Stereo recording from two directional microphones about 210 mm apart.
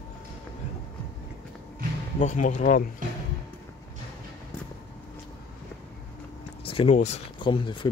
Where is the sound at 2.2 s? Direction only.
35° left (ahead or behind).